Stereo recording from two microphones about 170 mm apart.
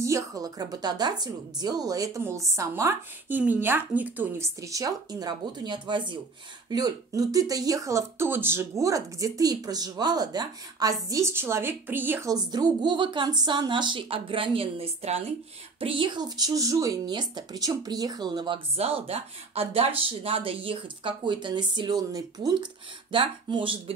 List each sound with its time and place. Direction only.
0.0 s speech: 20° right (ahead or behind)